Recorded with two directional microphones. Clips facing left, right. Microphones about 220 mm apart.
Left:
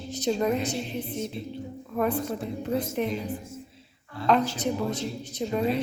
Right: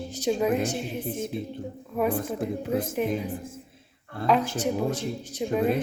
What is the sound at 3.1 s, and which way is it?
Speech, 50° right (ahead or behind).